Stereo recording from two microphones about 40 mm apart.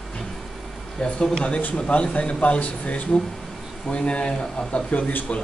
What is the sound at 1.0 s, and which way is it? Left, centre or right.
Speech, left.